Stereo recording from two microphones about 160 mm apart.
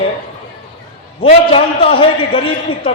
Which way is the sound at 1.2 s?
35° left (ahead or behind).